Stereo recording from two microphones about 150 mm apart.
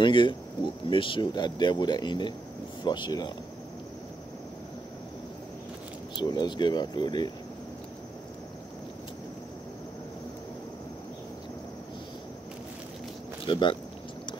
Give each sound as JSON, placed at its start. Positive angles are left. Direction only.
{"t": 0.0, "sound": "a man's voice", "side_deg": 30}
{"t": 6.1, "sound": "speech", "side_deg": 30}
{"t": 13.5, "sound": "a man's voice", "side_deg": 35}